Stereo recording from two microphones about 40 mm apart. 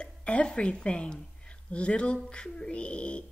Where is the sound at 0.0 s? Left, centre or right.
Left.